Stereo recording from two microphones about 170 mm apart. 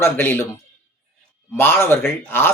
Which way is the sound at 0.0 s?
15° left (ahead or behind).